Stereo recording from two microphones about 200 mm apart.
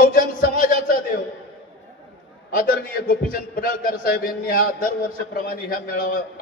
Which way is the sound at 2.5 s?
45° left (ahead or behind).